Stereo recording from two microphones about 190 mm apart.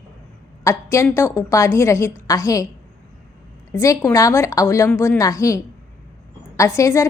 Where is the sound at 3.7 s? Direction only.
15° left (ahead or behind).